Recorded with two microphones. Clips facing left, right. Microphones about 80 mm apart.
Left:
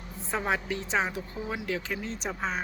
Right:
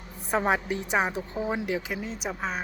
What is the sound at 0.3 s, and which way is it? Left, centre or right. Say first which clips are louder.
Speech: right 4 dB; right.